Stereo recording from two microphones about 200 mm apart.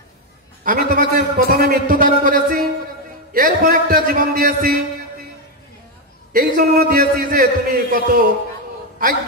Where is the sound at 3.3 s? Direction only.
45° right (ahead or behind).